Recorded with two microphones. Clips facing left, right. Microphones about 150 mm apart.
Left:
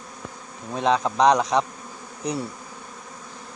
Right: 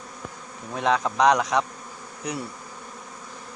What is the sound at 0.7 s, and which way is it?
Speech, 20° left (ahead or behind).